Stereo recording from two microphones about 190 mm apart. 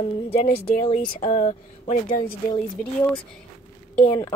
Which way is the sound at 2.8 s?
5° left (ahead or behind).